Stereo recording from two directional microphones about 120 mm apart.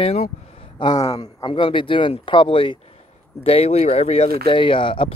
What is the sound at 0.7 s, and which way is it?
Speech, 35° left (ahead or behind).